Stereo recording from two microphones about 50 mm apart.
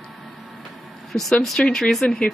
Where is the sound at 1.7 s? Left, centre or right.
Centre.